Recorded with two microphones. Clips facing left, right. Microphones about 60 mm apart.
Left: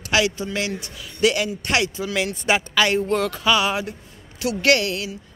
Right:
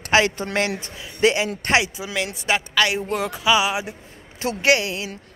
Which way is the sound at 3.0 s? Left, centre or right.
Centre.